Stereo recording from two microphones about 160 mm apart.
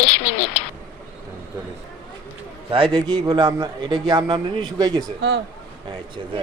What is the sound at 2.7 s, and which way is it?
A man's voice, 30° right (ahead or behind).